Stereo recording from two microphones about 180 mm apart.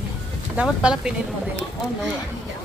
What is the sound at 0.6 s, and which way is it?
Speech, 5° right (ahead or behind).